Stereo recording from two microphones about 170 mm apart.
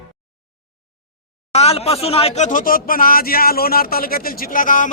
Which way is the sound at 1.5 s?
40° left (ahead or behind).